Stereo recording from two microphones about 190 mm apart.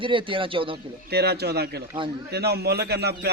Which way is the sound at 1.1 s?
60° right (ahead or behind).